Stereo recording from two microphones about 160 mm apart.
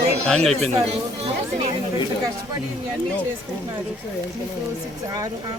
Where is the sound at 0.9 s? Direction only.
40° right (ahead or behind).